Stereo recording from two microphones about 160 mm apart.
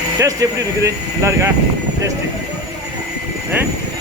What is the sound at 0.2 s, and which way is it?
Speech, 20° right (ahead or behind).